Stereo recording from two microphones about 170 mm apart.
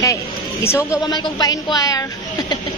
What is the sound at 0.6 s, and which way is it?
A woman's voice, 15° left (ahead or behind).